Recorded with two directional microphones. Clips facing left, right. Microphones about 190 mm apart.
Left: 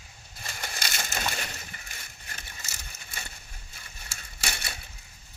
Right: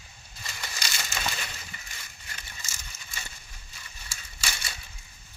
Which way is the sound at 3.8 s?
55° left (ahead or behind).